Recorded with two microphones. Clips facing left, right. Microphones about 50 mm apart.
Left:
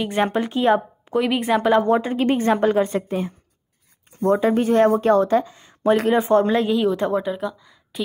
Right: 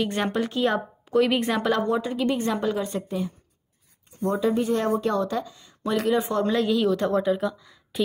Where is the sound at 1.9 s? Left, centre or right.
Left.